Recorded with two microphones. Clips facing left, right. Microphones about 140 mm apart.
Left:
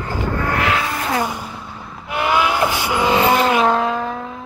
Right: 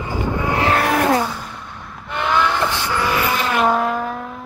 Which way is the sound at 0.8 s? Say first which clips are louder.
Right 7 dB; 75° right (ahead or behind).